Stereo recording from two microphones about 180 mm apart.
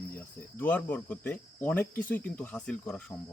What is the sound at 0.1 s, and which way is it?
Speech, 10° left (ahead or behind).